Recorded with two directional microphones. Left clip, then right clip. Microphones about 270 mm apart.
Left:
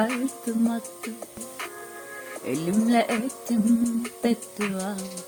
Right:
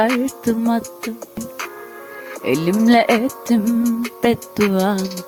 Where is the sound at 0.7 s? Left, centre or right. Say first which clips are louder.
Right 10 dB; right.